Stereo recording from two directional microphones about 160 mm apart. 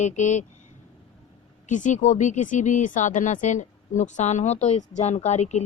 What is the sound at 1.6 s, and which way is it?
Speech, 50° left (ahead or behind).